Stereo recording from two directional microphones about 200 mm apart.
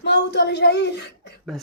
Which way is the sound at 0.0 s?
55° left (ahead or behind).